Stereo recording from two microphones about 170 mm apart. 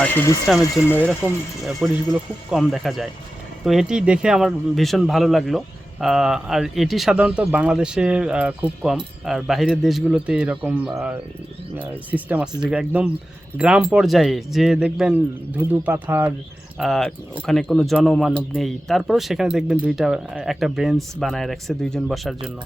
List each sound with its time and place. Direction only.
0.0 s speech: 10° left (ahead or behind)
1.2 s speech: centre (ahead or behind)
16.7 s speech: centre (ahead or behind)